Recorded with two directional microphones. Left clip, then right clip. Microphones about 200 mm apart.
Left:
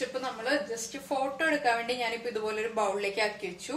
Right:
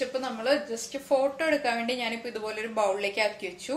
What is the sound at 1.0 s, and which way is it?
A woman's voice, 40° right (ahead or behind).